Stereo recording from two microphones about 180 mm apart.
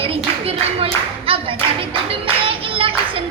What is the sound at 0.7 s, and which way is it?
Clapping, 30° right (ahead or behind).